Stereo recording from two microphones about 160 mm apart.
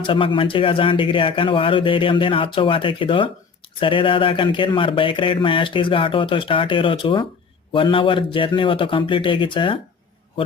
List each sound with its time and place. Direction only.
0.0 s speech: 30° left (ahead or behind)